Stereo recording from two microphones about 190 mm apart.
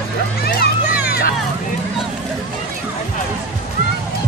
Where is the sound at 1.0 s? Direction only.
55° left (ahead or behind).